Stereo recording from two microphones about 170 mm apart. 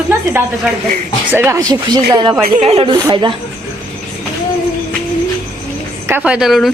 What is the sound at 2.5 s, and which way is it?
Speech, 35° right (ahead or behind).